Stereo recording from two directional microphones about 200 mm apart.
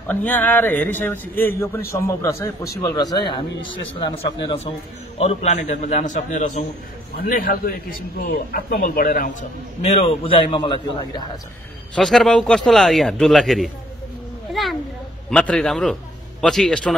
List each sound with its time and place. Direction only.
0.1 s a man's voice: 10° left (ahead or behind)
11.9 s a man's voice: centre (ahead or behind)
14.5 s a sound: centre (ahead or behind)
15.2 s a man's voice: 5° left (ahead or behind)